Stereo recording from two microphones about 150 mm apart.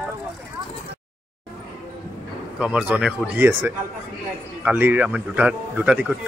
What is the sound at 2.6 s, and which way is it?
A man's voice, 5° right (ahead or behind).